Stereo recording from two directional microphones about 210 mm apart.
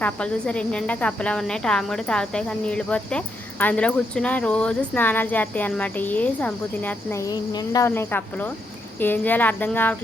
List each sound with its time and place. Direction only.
0.0 s speech: 5° left (ahead or behind)